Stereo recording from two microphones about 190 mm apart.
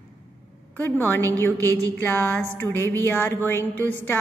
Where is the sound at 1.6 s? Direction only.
20° right (ahead or behind).